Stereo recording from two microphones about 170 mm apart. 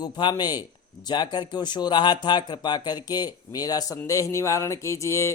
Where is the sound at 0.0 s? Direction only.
25° left (ahead or behind).